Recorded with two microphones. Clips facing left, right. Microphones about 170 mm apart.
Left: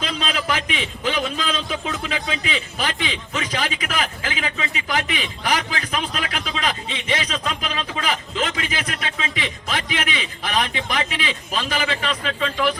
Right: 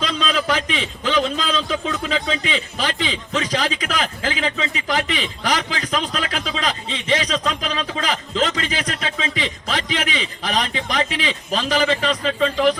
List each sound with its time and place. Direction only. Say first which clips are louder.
0.0 s a man's voice: right 4 dB; 40° right (ahead or behind)